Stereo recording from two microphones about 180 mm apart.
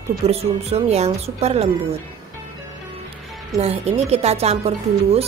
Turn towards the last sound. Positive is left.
turn(degrees=-35)  # may be behind; listen again after turning